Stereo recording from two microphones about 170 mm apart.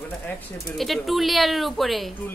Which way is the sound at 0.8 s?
Centre (ahead or behind).